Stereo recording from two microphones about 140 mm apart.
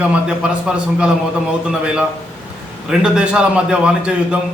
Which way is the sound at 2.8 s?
5° right (ahead or behind).